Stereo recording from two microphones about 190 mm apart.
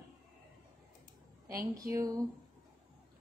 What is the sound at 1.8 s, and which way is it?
Speech, 15° right (ahead or behind).